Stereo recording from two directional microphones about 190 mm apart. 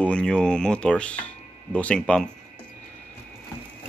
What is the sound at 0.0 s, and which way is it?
Speech, 5° left (ahead or behind).